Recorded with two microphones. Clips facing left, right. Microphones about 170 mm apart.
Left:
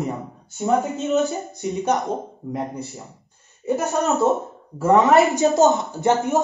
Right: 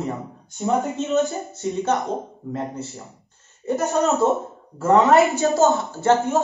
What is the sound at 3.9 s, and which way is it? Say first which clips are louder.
Speech: right 1 dB; 20° left (ahead or behind).